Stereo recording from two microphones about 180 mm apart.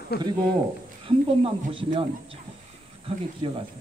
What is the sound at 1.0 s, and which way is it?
Speech, 30° right (ahead or behind).